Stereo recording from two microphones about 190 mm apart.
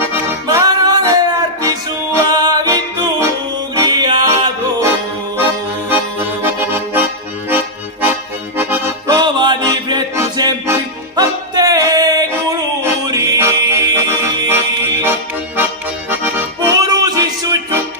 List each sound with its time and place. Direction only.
0.1 s music: 15° right (ahead or behind)
6.4 s accordion: 10° right (ahead or behind)
16.1 s accordion: 10° right (ahead or behind)